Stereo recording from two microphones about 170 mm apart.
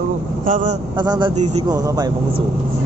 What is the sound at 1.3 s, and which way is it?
Speech, 40° right (ahead or behind).